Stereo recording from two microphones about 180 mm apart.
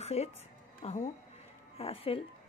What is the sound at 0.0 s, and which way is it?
A woman's voice, 35° left (ahead or behind).